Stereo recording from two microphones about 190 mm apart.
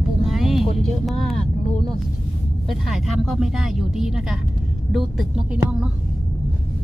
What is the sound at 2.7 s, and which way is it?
Speech, centre (ahead or behind).